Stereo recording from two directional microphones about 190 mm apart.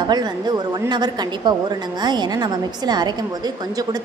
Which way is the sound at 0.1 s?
20° right (ahead or behind).